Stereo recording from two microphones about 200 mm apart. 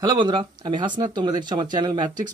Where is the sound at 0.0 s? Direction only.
25° right (ahead or behind).